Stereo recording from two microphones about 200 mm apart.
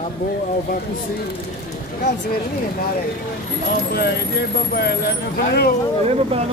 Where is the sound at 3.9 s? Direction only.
55° left (ahead or behind).